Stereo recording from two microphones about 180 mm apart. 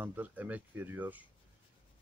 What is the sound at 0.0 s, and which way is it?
Speech, 10° right (ahead or behind).